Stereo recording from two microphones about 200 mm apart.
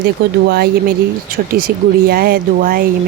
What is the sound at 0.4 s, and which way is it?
Speech, 55° right (ahead or behind).